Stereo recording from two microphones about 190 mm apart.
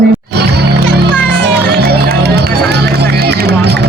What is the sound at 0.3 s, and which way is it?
Music, 60° right (ahead or behind).